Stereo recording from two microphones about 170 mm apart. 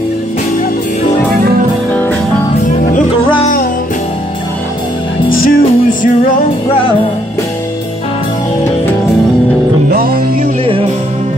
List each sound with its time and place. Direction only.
5.3 s music: 55° left (ahead or behind)
9.8 s music: 60° right (ahead or behind)
10.4 s music: 35° right (ahead or behind)